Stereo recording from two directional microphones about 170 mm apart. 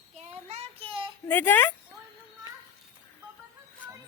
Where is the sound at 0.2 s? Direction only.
40° right (ahead or behind).